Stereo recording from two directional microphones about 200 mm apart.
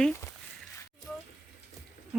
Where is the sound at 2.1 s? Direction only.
5° right (ahead or behind).